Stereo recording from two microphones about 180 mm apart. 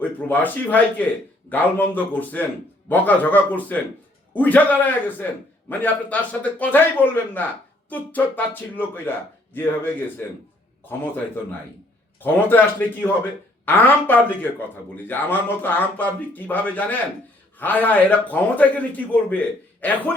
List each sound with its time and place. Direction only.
0.0 s a man's voice: 10° left (ahead or behind)
12.2 s a man's voice: 10° left (ahead or behind)